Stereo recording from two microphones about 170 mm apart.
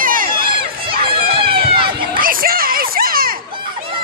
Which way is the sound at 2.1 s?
55° right (ahead or behind).